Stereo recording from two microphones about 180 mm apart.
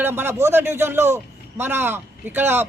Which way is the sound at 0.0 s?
10° right (ahead or behind).